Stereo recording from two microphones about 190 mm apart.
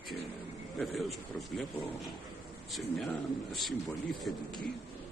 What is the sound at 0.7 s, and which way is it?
Speech, centre (ahead or behind).